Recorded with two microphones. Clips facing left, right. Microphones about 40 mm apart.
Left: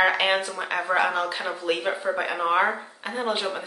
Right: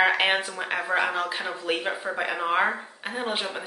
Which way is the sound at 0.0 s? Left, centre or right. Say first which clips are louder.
Left 1 dB; centre.